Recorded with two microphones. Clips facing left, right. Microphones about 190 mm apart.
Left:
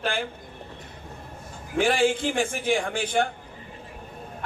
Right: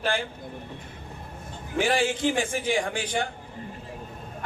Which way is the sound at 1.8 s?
55° left (ahead or behind).